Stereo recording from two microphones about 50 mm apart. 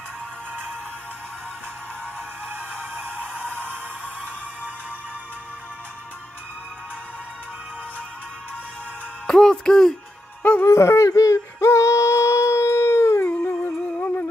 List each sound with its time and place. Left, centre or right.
2.5 s music: right
9.3 s music: centre
10.6 s yodeling: left
13.3 s music: left
13.7 s music: left